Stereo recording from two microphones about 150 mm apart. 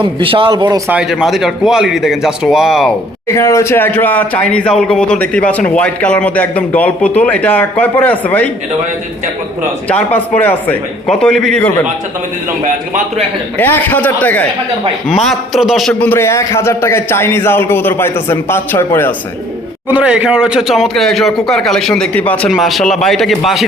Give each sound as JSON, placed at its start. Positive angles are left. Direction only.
{"t": 0.0, "sound": "speech", "side_deg": -35}
{"t": 0.9, "sound": "speech", "side_deg": -5}
{"t": 3.2, "sound": "a man's voice", "side_deg": 20}
{"t": 9.9, "sound": "a man's voice", "side_deg": 10}
{"t": 13.6, "sound": "a man's voice", "side_deg": 10}
{"t": 15.1, "sound": "a man's voice", "side_deg": 0}
{"t": 19.9, "sound": "speech", "side_deg": -10}